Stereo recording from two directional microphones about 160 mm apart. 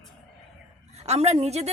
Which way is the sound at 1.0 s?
40° right (ahead or behind).